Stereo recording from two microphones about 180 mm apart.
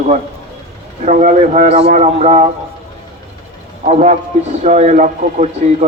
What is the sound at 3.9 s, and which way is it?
Speech, 40° right (ahead or behind).